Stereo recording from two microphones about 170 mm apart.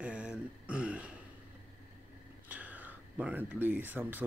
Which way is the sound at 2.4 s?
10° right (ahead or behind).